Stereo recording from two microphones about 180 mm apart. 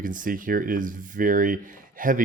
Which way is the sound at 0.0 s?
50° right (ahead or behind).